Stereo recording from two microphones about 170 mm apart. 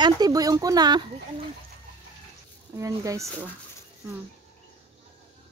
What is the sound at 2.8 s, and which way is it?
Speech, 20° right (ahead or behind).